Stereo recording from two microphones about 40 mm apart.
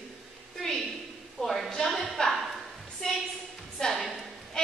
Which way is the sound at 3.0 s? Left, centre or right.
Centre.